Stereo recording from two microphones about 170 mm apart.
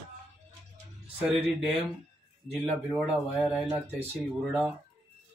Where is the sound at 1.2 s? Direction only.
Centre (ahead or behind).